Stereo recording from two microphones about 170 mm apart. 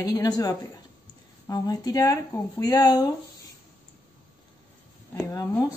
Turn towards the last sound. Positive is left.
turn(degrees=20)  # may be behind; listen again after turning